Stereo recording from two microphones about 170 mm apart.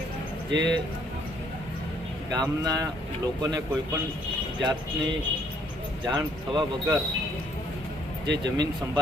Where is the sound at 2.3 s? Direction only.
20° right (ahead or behind).